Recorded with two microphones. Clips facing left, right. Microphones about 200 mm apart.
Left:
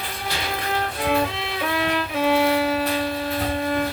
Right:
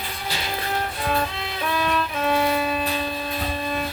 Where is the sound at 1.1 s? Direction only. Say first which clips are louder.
Left 4 dB; 15° left (ahead or behind).